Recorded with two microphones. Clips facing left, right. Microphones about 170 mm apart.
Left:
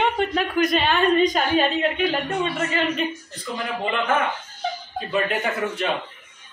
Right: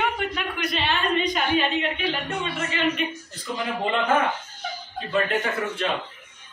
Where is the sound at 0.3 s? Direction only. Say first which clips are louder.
Left 8 dB; 40° left (ahead or behind).